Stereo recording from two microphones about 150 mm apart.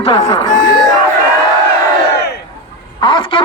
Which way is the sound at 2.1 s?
90° left.